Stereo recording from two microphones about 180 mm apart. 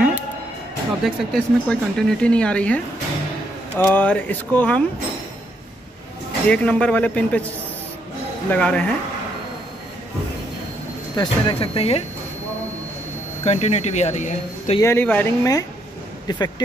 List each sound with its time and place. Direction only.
1.0 s speech: centre (ahead or behind)
6.5 s speech: 5° left (ahead or behind)
8.5 s speech: 5° left (ahead or behind)
11.1 s speech: 30° left (ahead or behind)
13.4 s speech: 40° left (ahead or behind)
14.8 s speech: 15° left (ahead or behind)